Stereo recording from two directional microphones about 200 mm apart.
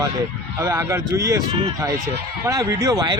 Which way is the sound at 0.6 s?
15° right (ahead or behind).